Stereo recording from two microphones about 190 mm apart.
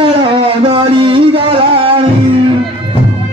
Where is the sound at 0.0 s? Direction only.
30° right (ahead or behind).